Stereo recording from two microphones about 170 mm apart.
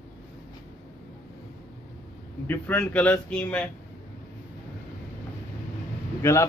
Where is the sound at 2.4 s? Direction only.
10° left (ahead or behind).